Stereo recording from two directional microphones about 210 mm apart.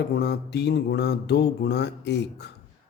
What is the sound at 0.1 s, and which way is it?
Mantra, 50° left (ahead or behind).